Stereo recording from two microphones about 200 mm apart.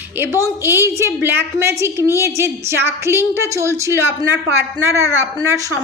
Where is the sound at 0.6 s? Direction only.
10° right (ahead or behind).